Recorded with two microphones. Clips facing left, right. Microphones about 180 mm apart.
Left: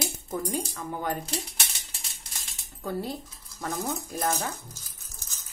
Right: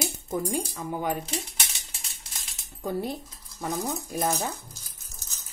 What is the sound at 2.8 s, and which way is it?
Speech, 15° right (ahead or behind).